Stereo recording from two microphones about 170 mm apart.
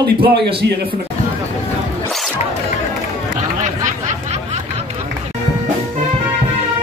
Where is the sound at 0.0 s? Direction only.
75° right (ahead or behind).